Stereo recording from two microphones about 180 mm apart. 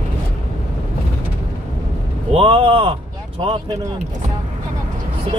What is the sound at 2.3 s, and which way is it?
Speech, 30° right (ahead or behind).